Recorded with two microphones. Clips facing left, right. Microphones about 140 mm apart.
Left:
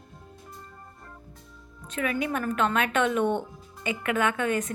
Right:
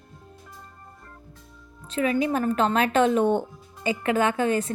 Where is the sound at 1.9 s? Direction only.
30° right (ahead or behind).